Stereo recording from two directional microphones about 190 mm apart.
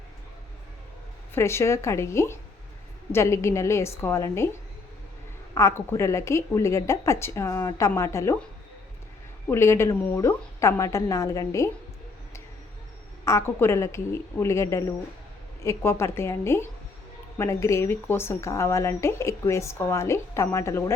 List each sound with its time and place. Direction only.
1.3 s a woman's voice: 15° left (ahead or behind)
5.5 s a woman's voice: 15° left (ahead or behind)
9.5 s a woman's voice: 15° left (ahead or behind)
13.2 s a woman's voice: 15° left (ahead or behind)